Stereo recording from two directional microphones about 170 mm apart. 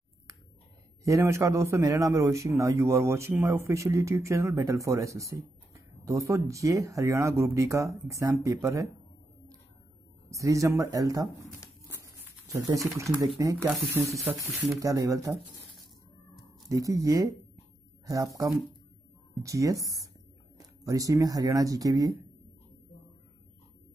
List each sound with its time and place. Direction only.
1.0 s a man's voice: 15° right (ahead or behind)
10.3 s speech: 20° right (ahead or behind)
11.9 s a sound: 15° right (ahead or behind)
13.4 s speech: 20° right (ahead or behind)
14.8 s speech: 20° right (ahead or behind)
16.6 s speech: 20° right (ahead or behind)